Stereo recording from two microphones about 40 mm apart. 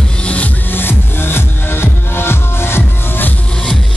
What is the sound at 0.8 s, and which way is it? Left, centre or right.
Music, left.